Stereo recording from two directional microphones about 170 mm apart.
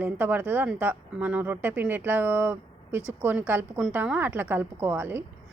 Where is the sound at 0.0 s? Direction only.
10° right (ahead or behind).